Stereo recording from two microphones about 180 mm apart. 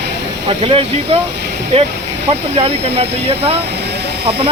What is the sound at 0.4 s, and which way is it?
Speech, 30° right (ahead or behind).